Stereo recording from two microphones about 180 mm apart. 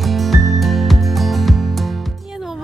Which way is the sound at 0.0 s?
Centre (ahead or behind).